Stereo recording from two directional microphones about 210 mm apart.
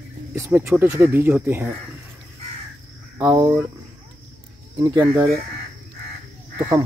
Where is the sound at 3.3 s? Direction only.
20° right (ahead or behind).